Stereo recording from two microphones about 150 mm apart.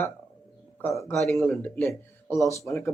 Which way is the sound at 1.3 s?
5° left (ahead or behind).